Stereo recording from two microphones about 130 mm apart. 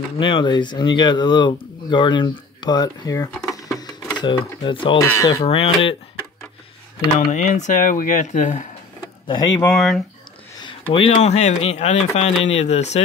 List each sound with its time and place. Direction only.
0.2 s speech: 40° left (ahead or behind)
3.3 s speech: 5° left (ahead or behind)
3.6 s sewing machine: centre (ahead or behind)
4.2 s speech: 40° left (ahead or behind)
5.0 s speech: 20° left (ahead or behind)
5.4 s speech: 45° left (ahead or behind)
7.3 s speech: 70° left (ahead or behind)
9.6 s speech: 5° left (ahead or behind)
10.6 s speech: 40° left (ahead or behind); by 13.0 s 60° left (ahead or behind)